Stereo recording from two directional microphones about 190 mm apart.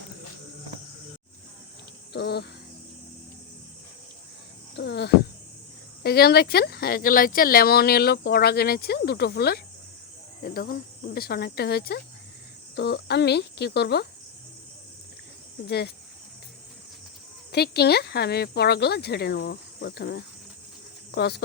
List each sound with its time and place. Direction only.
2.1 s speech: 60° left (ahead or behind)
4.8 s a sound: 60° left (ahead or behind)
6.0 s speech: 55° left (ahead or behind)
15.6 s speech: 60° left (ahead or behind)
17.5 s speech: 55° left (ahead or behind)